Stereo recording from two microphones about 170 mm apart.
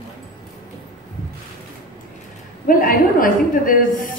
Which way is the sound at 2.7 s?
55° left (ahead or behind).